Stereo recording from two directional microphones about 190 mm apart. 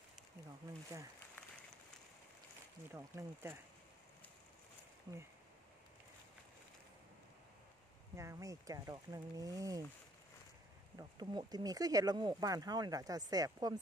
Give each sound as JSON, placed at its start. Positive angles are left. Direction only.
{"t": 2.9, "sound": "speech", "side_deg": -15}
{"t": 5.1, "sound": "speech", "side_deg": -20}
{"t": 8.2, "sound": "speech", "side_deg": -15}
{"t": 11.0, "sound": "speech", "side_deg": -20}